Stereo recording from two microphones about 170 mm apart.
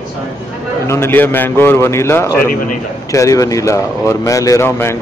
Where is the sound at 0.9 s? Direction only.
15° left (ahead or behind).